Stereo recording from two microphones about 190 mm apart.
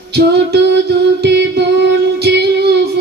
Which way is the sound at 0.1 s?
60° right (ahead or behind).